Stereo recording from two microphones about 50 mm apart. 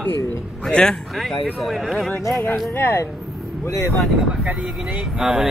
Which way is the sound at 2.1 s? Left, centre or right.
Left.